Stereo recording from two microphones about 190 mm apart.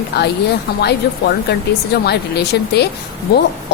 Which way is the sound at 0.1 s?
60° left (ahead or behind).